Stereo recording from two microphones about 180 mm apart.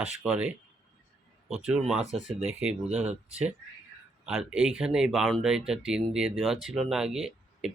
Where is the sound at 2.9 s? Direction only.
35° right (ahead or behind).